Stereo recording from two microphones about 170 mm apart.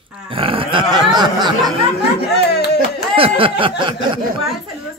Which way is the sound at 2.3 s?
75° left (ahead or behind).